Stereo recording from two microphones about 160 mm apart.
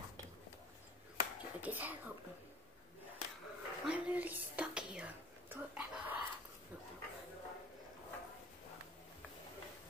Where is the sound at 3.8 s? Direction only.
10° right (ahead or behind).